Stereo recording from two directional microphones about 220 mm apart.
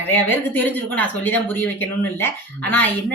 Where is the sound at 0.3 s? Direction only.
10° left (ahead or behind).